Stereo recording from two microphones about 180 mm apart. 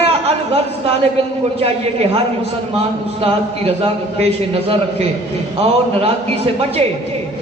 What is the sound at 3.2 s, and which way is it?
A man's voice, 35° right (ahead or behind).